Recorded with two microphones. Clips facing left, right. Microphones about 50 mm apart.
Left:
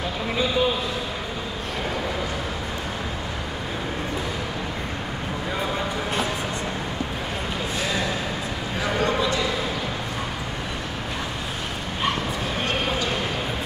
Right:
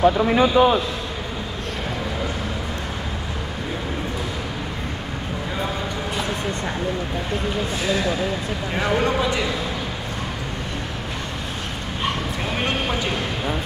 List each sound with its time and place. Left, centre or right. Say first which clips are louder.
0.0 s a man's voice: right 9 dB; right
8.7 s speech: right 3 dB; right